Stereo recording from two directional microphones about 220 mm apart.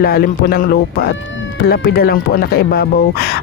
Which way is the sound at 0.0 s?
45° left (ahead or behind).